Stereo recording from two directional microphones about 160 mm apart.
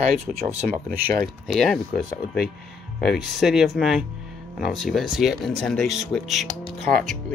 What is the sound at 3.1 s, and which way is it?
Speech, centre (ahead or behind).